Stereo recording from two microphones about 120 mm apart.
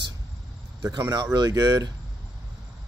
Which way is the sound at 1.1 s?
35° right (ahead or behind).